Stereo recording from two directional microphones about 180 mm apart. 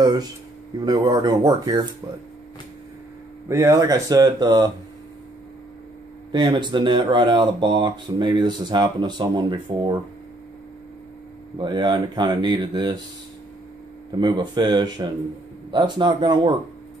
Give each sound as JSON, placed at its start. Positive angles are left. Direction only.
{"t": 0.7, "sound": "speech", "side_deg": -25}
{"t": 3.4, "sound": "speech", "side_deg": -15}
{"t": 6.3, "sound": "speech", "side_deg": -25}
{"t": 11.5, "sound": "speech", "side_deg": -25}
{"t": 14.1, "sound": "speech", "side_deg": -25}